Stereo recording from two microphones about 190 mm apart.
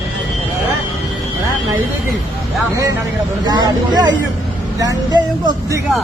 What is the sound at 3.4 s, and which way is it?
Speech, 20° right (ahead or behind).